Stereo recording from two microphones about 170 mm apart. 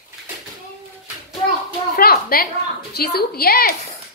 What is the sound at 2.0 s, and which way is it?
A woman's voice, 60° left (ahead or behind).